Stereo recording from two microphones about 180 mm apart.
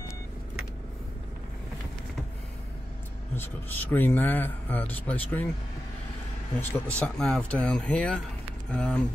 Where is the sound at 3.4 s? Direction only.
10° left (ahead or behind).